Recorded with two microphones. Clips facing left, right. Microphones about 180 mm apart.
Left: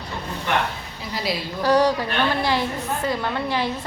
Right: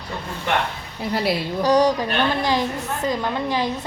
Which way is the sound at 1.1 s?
60° right (ahead or behind).